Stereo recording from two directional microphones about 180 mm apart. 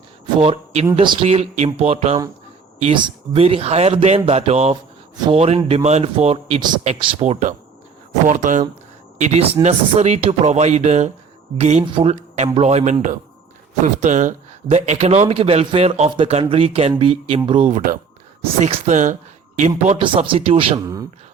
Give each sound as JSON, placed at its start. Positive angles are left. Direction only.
{"t": 0.3, "sound": "a man's voice", "side_deg": -35}
{"t": 17.7, "sound": "a man's voice", "side_deg": -40}
{"t": 20.0, "sound": "speech", "side_deg": -30}
{"t": 20.8, "sound": "speech", "side_deg": -20}